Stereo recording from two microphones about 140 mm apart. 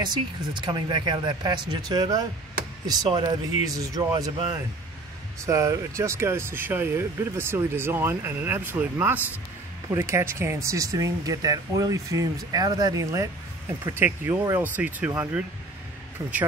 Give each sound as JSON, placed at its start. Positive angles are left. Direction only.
{"t": 0.0, "sound": "speech", "side_deg": -35}
{"t": 5.4, "sound": "speech", "side_deg": -20}